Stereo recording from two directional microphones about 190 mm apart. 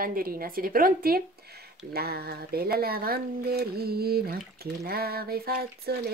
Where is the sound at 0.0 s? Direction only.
50° right (ahead or behind).